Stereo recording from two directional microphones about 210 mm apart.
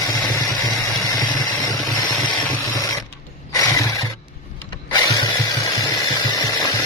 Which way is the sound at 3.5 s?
15° left (ahead or behind).